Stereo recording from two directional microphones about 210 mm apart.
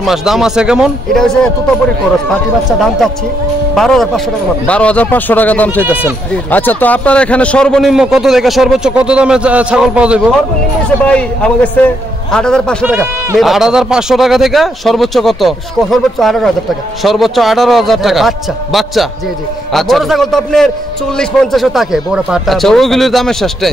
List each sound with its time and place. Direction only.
0.0 s a man's voice: centre (ahead or behind)
3.7 s a man's voice: centre (ahead or behind)
11.0 s a man's voice: 5° left (ahead or behind)
12.8 s a man's voice: 10° right (ahead or behind)